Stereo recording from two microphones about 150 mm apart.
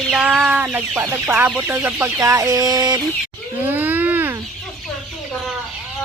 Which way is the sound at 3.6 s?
10° right (ahead or behind).